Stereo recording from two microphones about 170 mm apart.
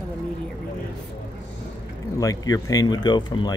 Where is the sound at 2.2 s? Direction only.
20° left (ahead or behind).